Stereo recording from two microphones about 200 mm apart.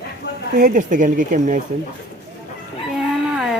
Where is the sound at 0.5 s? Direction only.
45° right (ahead or behind).